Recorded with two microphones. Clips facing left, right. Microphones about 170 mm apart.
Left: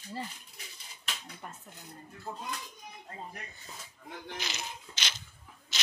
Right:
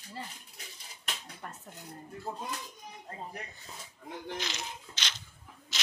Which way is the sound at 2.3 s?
20° right (ahead or behind).